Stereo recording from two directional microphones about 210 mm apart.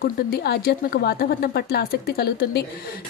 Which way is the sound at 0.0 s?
50° left (ahead or behind).